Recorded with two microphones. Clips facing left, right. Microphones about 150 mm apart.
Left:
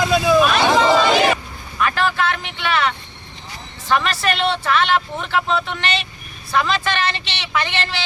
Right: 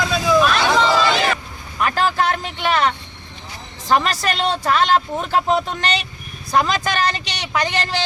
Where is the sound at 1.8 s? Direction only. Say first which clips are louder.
Right 1 dB; 40° right (ahead or behind).